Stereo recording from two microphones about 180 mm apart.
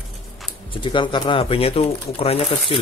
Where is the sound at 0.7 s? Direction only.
25° left (ahead or behind).